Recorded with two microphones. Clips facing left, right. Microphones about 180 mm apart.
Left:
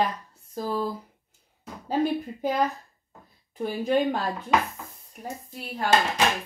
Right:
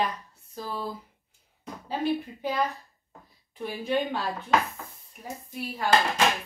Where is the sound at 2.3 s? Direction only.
40° left (ahead or behind).